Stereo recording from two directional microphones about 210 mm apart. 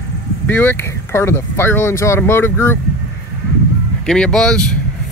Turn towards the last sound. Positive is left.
turn(degrees=5)  # may be behind; listen again after turning